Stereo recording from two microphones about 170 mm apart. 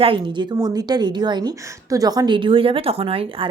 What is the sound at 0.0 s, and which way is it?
Speech, 30° right (ahead or behind).